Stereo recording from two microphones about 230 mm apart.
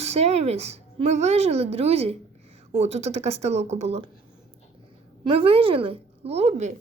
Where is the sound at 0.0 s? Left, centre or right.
Right.